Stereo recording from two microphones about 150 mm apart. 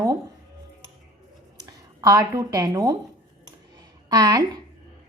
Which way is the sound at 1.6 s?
25° right (ahead or behind).